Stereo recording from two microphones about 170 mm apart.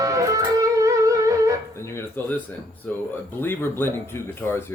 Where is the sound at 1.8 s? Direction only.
15° left (ahead or behind).